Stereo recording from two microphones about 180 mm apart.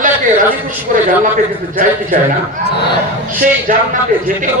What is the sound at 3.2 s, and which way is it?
A man's voice, 50° right (ahead or behind).